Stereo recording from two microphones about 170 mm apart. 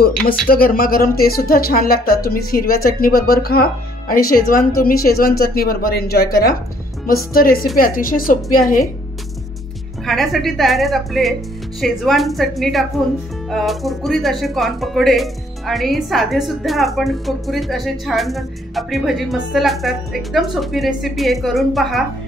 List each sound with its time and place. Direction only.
0.5 s speech: 60° left (ahead or behind)
10.0 s speech: centre (ahead or behind)